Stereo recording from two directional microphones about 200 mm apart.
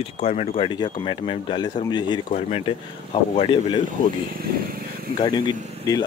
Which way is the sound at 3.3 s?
25° left (ahead or behind).